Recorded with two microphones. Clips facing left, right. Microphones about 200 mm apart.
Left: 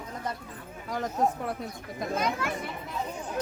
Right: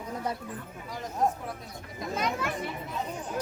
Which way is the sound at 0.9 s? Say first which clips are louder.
Left 2 dB; 60° left (ahead or behind).